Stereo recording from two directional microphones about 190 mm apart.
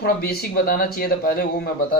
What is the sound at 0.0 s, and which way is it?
Speech, 55° left (ahead or behind).